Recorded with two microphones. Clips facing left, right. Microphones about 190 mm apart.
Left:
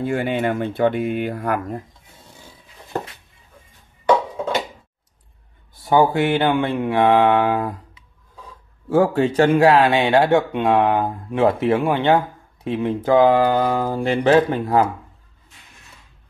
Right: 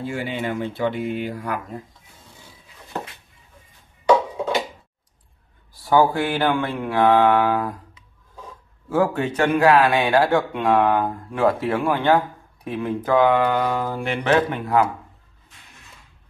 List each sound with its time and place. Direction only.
0.0 s speech: 55° left (ahead or behind)
5.8 s speech: 20° left (ahead or behind)
8.8 s speech: 30° left (ahead or behind)